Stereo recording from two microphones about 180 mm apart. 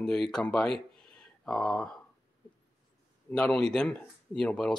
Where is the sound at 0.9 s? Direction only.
5° left (ahead or behind).